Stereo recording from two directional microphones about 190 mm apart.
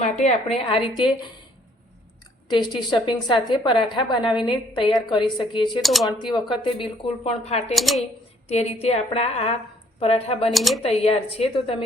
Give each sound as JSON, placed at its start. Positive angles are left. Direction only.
{"t": 0.0, "sound": "a woman's voice", "side_deg": 35}
{"t": 2.5, "sound": "a woman's voice", "side_deg": 25}
{"t": 5.8, "sound": "speech", "side_deg": 0}
{"t": 6.1, "sound": "a woman's voice", "side_deg": 25}
{"t": 7.8, "sound": "speech", "side_deg": 0}
{"t": 8.4, "sound": "a woman's voice", "side_deg": 35}
{"t": 10.5, "sound": "speech", "side_deg": 0}
{"t": 10.8, "sound": "a woman's voice", "side_deg": 30}